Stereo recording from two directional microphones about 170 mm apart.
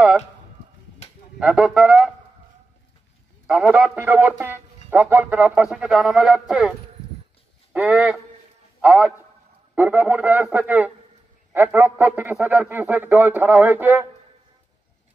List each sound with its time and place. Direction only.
1.0 s a sound: 40° left (ahead or behind)
1.4 s speech: 5° right (ahead or behind)
3.4 s speech: 5° right (ahead or behind)
7.7 s speech: 5° right (ahead or behind)